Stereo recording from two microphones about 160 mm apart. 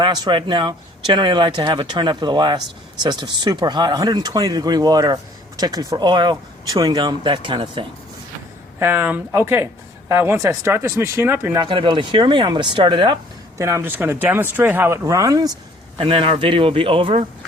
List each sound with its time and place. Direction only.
0.0 s speech: 25° right (ahead or behind)
8.8 s speech: 15° right (ahead or behind)
11.6 s speech: 30° right (ahead or behind)
13.6 s speech: 20° right (ahead or behind)
16.0 s a man's voice: 35° right (ahead or behind)